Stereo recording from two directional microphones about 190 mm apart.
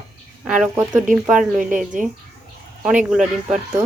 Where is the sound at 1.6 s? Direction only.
45° right (ahead or behind).